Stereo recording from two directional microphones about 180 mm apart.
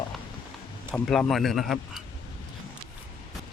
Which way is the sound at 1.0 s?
Centre (ahead or behind).